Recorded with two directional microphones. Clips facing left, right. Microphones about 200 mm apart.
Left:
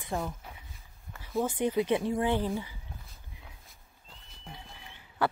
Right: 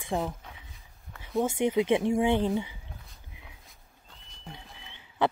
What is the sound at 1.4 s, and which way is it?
Speech, 25° right (ahead or behind).